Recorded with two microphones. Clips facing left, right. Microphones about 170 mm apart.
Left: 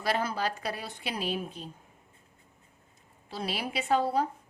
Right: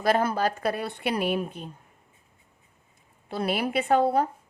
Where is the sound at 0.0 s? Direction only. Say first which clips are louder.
Right 6 dB; 50° right (ahead or behind).